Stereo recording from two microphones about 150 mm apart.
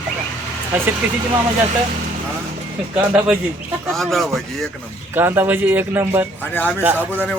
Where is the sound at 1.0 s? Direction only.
10° right (ahead or behind).